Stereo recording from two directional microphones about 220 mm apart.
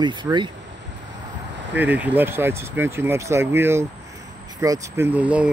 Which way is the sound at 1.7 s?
5° right (ahead or behind).